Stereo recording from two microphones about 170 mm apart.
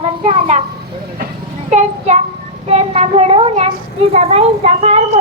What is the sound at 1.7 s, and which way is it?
Speech, 40° right (ahead or behind).